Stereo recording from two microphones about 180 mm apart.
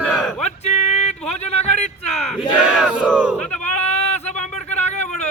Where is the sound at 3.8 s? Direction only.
35° left (ahead or behind).